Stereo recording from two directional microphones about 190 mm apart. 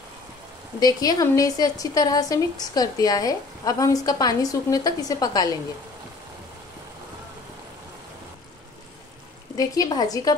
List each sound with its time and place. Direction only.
0.7 s speech: 20° left (ahead or behind)
9.6 s speech: 20° left (ahead or behind)